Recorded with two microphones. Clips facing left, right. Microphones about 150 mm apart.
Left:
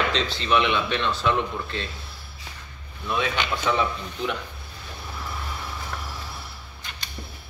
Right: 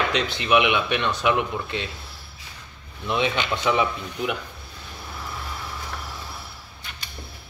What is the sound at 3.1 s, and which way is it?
Speech, 20° right (ahead or behind).